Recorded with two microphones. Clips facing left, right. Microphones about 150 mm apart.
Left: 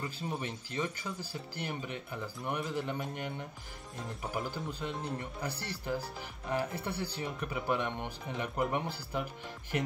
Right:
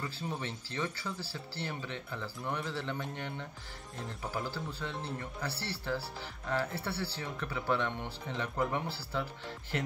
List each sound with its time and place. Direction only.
0.0 s speech: 15° left (ahead or behind)